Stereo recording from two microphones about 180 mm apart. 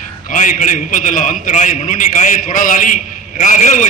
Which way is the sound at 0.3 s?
45° left (ahead or behind).